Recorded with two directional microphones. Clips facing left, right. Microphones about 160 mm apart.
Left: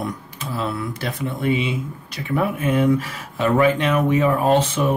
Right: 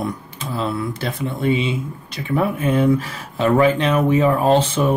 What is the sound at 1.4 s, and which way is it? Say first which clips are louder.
Speech: right 2 dB; 25° right (ahead or behind).